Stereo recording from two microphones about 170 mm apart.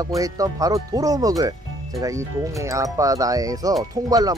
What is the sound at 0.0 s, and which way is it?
Speech, 20° right (ahead or behind).